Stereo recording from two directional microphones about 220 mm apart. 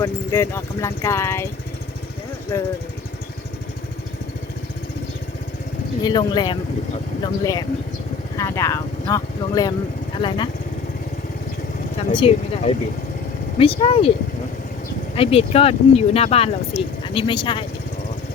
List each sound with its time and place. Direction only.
0.0 s speech: 10° left (ahead or behind)
2.5 s speech: 10° left (ahead or behind)
6.0 s speech: 20° left (ahead or behind)
11.9 s speech: 25° left (ahead or behind)
15.1 s speech: 25° left (ahead or behind)